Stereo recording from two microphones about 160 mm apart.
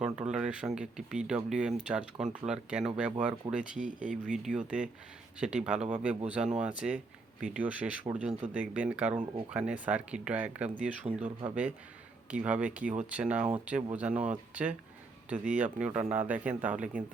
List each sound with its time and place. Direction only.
0.0 s speech: 5° right (ahead or behind)
11.1 s speech: 35° right (ahead or behind)
11.4 s speech: 10° right (ahead or behind)